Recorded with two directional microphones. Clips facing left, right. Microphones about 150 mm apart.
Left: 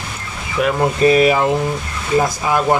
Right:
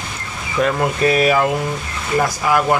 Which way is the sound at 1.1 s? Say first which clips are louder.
Left 3 dB; 25° left (ahead or behind).